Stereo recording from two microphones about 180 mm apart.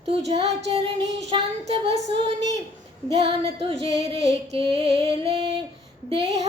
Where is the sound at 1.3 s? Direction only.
35° right (ahead or behind).